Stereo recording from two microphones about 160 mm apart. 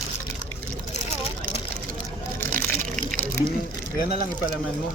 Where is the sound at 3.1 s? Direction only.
15° left (ahead or behind).